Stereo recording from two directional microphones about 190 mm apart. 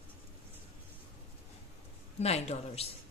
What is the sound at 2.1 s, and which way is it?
Speech, 35° left (ahead or behind).